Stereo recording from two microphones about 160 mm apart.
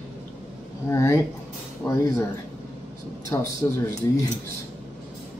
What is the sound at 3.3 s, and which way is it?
Speech, 15° left (ahead or behind).